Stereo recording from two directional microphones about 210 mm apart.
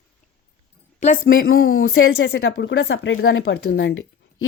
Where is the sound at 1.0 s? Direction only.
40° left (ahead or behind).